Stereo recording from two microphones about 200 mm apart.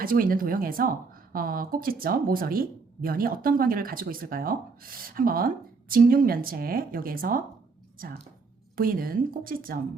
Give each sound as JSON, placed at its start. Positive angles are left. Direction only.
{"t": 0.0, "sound": "speech", "side_deg": -45}